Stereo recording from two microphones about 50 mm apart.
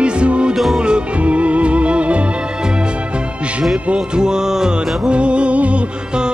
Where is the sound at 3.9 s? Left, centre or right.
Centre.